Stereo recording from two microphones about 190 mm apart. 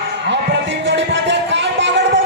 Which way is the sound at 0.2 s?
65° right (ahead or behind).